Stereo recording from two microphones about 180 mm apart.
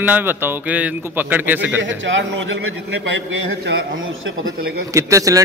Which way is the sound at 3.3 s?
80° right.